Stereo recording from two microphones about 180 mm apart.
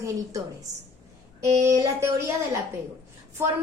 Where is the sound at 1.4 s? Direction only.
15° right (ahead or behind).